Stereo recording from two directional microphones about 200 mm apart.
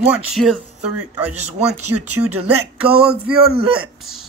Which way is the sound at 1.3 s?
35° right (ahead or behind).